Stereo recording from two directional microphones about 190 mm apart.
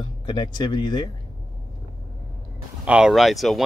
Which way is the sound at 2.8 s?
5° right (ahead or behind).